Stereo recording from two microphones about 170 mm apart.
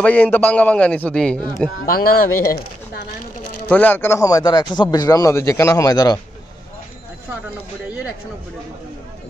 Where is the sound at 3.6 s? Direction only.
10° left (ahead or behind).